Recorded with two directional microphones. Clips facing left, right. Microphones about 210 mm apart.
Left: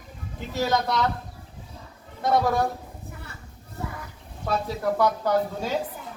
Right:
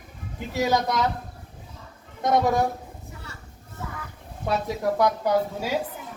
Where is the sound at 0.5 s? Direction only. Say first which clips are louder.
Right 1 dB; 15° right (ahead or behind).